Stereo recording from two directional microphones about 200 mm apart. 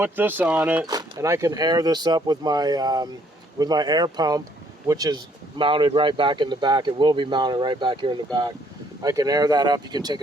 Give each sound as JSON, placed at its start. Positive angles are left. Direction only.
{"t": 0.0, "sound": "speech", "side_deg": -10}